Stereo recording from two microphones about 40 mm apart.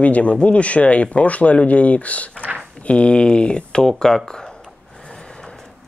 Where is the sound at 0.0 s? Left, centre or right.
Left; by 4.5 s centre.